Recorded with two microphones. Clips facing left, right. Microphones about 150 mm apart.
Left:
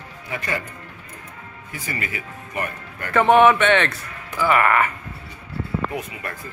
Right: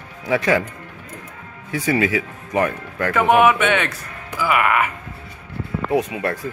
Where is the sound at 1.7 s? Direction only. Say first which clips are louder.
Right 12 dB; 80° right.